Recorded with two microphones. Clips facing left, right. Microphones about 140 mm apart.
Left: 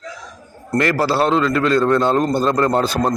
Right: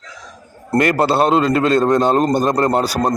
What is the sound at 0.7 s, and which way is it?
A man's voice, 20° right (ahead or behind).